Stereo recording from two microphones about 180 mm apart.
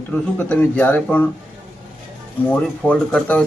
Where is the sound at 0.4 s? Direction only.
5° left (ahead or behind).